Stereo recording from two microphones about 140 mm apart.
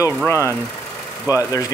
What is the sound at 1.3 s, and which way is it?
Speech, 25° left (ahead or behind).